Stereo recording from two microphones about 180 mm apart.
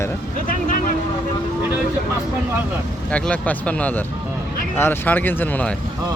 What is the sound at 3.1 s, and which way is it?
Speech, 5° left (ahead or behind).